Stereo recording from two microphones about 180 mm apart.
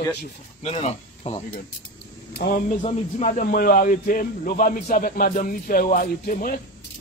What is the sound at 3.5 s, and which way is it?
A man's voice, 55° left (ahead or behind).